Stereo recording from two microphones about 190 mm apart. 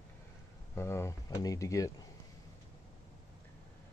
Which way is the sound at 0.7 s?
15° left (ahead or behind).